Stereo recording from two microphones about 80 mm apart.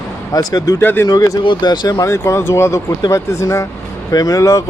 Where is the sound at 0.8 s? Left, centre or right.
Left.